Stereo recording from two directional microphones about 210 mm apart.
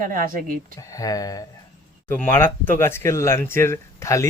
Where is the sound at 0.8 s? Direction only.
15° left (ahead or behind).